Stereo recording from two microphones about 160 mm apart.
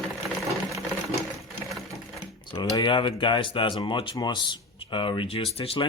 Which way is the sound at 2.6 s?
25° left (ahead or behind).